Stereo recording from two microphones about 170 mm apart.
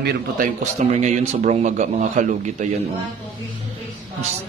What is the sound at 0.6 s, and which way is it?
Speech, 45° right (ahead or behind).